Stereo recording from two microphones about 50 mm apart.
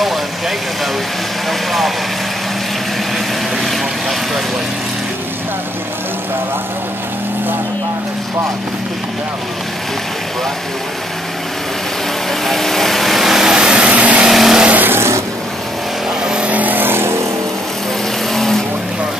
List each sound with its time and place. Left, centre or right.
12.4 s vehicle: centre; by 14.2 s right
14.2 s vehicle: centre
14.7 s vehicle: right
15.0 s vehicle: right
16.4 s vehicle: right
18.3 s vehicle: centre